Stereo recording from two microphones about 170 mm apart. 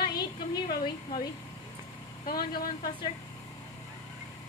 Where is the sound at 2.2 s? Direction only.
60° left (ahead or behind).